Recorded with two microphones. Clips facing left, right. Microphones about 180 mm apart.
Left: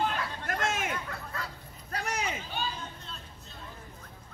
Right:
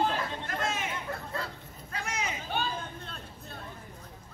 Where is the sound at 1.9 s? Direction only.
35° left (ahead or behind).